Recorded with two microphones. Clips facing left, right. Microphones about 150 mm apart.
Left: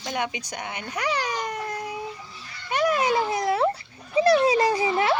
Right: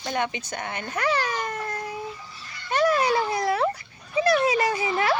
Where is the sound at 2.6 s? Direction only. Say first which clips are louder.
Right 1 dB; 15° left (ahead or behind).